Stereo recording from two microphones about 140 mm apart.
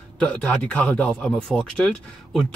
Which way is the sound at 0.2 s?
5° left (ahead or behind).